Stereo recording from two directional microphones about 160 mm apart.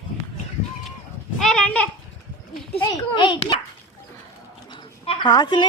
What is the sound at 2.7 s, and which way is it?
Speech, 30° left (ahead or behind).